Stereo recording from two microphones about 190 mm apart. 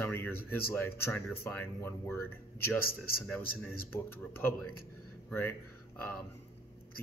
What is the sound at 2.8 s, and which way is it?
Speech, 50° left (ahead or behind).